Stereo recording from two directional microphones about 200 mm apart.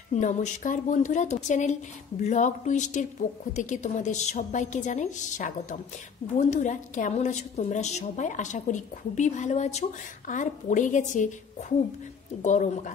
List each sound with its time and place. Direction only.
0.1 s a woman's voice: 35° left (ahead or behind)
12.4 s a woman's voice: 35° left (ahead or behind)